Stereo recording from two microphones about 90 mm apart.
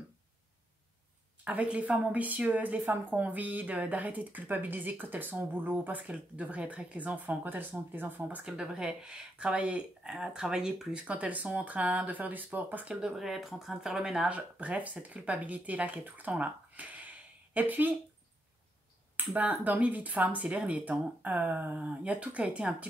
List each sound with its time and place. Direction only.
1.4 s speech: 15° right (ahead or behind)
8.5 s speech: 10° right (ahead or behind)
16.3 s a sound: 15° right (ahead or behind)
19.3 s speech: 15° right (ahead or behind)